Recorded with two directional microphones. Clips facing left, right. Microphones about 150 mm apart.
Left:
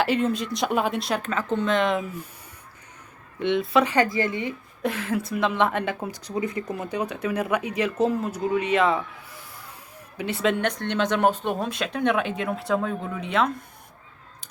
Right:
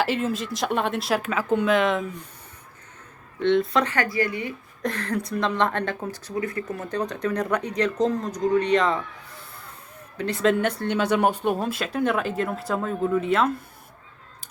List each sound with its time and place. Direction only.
0.0 s speech: centre (ahead or behind)
3.4 s speech: 5° left (ahead or behind)
3.9 s a woman's voice: 20° left (ahead or behind)
4.8 s a woman's voice: 5° left (ahead or behind)
10.4 s speech: 5° right (ahead or behind)